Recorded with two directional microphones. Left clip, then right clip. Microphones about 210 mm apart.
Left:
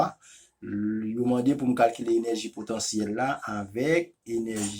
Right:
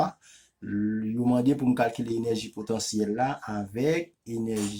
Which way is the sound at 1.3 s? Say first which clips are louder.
Right 2 dB; 55° right (ahead or behind).